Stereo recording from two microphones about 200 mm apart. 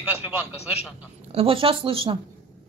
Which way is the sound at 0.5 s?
30° left (ahead or behind).